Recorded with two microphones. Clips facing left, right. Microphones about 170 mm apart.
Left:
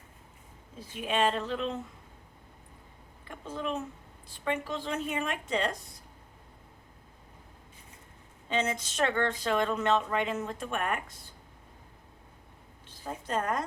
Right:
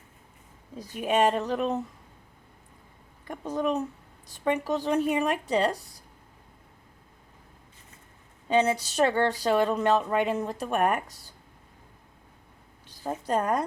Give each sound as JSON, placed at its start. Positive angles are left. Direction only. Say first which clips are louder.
{"t": 0.8, "sound": "speech", "louder": "right 5 dB", "side_deg": -45}
{"t": 3.2, "sound": "speech", "louder": "right 7 dB", "side_deg": -40}
{"t": 8.4, "sound": "speech", "louder": "right 7 dB", "side_deg": -35}
{"t": 13.1, "sound": "speech", "louder": "right 5 dB", "side_deg": -35}